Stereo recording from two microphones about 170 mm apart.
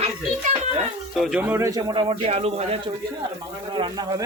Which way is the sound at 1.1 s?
Centre (ahead or behind).